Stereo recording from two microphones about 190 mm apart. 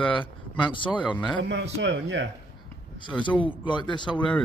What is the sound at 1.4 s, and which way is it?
Speech, 70° right (ahead or behind).